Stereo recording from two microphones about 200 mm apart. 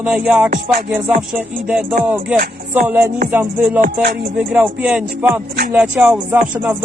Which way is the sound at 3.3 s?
10° right (ahead or behind).